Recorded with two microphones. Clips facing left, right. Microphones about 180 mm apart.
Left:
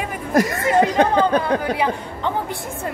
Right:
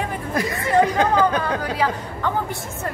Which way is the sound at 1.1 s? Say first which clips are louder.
Left 2 dB; 25° left (ahead or behind).